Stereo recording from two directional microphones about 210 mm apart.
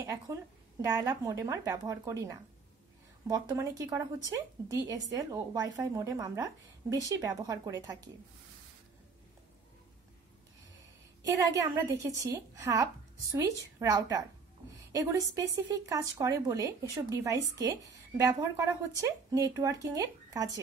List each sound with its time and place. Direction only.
0.0 s a sound: 15° right (ahead or behind)
0.8 s speech: 15° right (ahead or behind)
11.2 s speech: 15° right (ahead or behind)